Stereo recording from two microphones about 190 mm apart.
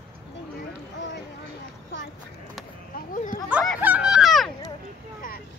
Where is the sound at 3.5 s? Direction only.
10° right (ahead or behind).